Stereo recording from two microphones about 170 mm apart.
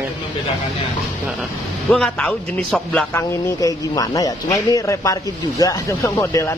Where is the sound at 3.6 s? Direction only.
20° left (ahead or behind).